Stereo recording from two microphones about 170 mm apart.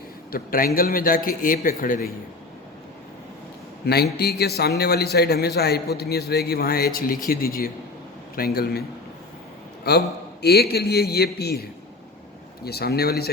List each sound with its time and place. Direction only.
0.3 s a man's voice: 60° left (ahead or behind)
3.8 s a man's voice: 70° left (ahead or behind)
9.9 s a man's voice: 70° left (ahead or behind)